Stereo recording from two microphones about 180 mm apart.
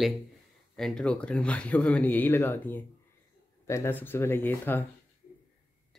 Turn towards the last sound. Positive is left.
turn(degrees=10)  # may be behind; listen again after turning